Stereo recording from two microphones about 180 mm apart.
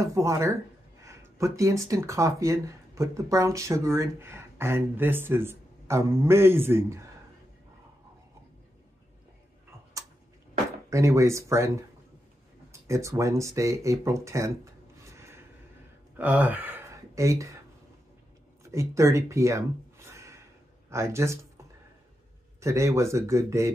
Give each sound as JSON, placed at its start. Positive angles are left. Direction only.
{"t": 0.0, "sound": "speech", "side_deg": -20}
{"t": 10.9, "sound": "speech", "side_deg": -15}
{"t": 12.8, "sound": "speech", "side_deg": -15}
{"t": 18.6, "sound": "speech", "side_deg": -15}
{"t": 20.1, "sound": "gasp", "side_deg": -15}
{"t": 20.9, "sound": "speech", "side_deg": -15}
{"t": 22.6, "sound": "speech", "side_deg": -15}